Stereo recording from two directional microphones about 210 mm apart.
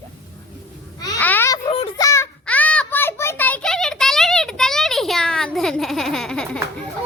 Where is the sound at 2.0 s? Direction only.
15° left (ahead or behind).